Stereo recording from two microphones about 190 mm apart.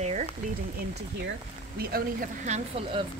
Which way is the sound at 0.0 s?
35° right (ahead or behind).